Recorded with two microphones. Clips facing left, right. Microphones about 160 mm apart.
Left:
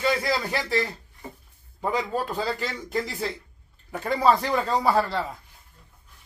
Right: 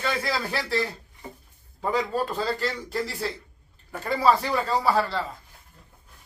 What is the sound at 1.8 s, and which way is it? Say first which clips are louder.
Speech: right 1 dB; 10° left (ahead or behind).